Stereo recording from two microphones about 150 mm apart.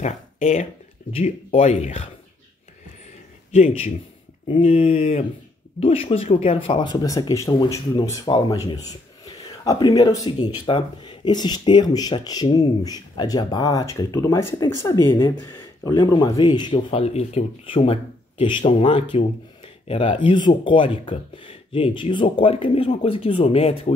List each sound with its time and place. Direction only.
0.0 s speech: 50° left (ahead or behind)
4.5 s speech: 40° left (ahead or behind)
16.9 s speech: 45° left (ahead or behind)